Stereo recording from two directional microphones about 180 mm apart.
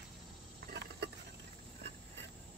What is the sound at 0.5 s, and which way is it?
Cricket, 65° right (ahead or behind).